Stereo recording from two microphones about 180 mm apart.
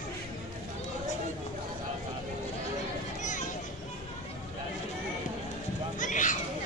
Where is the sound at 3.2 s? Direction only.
45° left (ahead or behind).